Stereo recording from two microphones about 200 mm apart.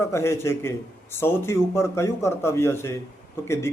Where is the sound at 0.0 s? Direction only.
15° left (ahead or behind).